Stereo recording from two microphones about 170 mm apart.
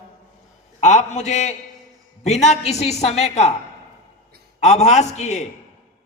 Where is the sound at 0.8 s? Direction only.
45° left (ahead or behind).